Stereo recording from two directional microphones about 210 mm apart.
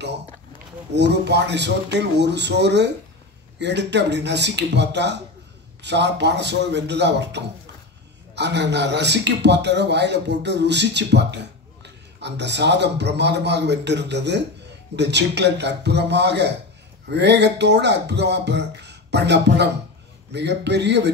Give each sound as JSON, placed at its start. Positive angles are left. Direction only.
{"t": 0.9, "sound": "a man's voice", "side_deg": -55}